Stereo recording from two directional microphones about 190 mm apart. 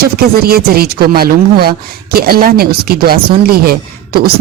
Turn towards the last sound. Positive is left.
turn(degrees=-55)  # may be behind; listen again after turning